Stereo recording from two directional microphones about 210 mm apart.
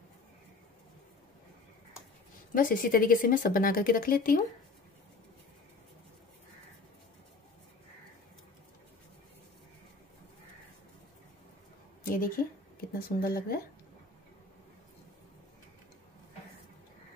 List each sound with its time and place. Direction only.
2.5 s speech: 40° left (ahead or behind)
12.0 s a sound: 45° left (ahead or behind)
13.2 s speech: 45° left (ahead or behind)